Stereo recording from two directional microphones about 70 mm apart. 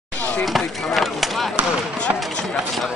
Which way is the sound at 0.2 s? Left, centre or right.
Left.